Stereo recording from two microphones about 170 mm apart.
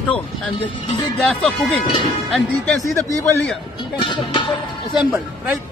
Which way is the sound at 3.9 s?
25° left (ahead or behind).